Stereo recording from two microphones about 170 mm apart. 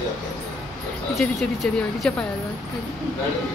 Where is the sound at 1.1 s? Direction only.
Centre (ahead or behind).